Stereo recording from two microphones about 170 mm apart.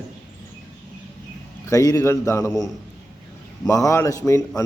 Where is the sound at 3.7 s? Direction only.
20° left (ahead or behind).